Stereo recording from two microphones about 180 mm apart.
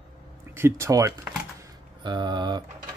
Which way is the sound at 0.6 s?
15° right (ahead or behind).